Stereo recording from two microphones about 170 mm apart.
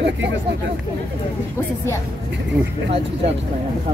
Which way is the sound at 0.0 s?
90° right.